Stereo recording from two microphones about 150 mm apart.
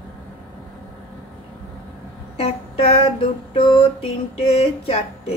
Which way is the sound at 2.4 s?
40° left (ahead or behind).